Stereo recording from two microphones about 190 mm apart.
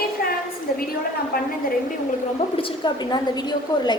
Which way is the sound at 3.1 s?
20° left (ahead or behind).